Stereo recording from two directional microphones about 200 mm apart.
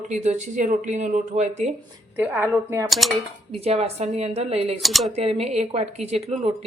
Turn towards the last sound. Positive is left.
turn(degrees=-30)  # may be behind; listen again after turning